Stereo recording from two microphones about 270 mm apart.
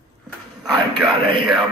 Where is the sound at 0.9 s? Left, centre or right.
Centre.